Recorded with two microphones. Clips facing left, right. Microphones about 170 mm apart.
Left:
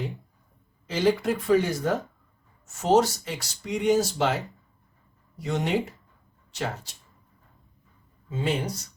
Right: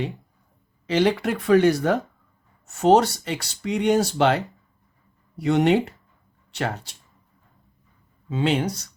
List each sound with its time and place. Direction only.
0.9 s speech: 70° right (ahead or behind)
8.3 s speech: 75° right (ahead or behind)